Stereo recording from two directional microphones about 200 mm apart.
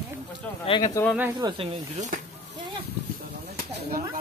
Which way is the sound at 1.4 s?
20° right (ahead or behind).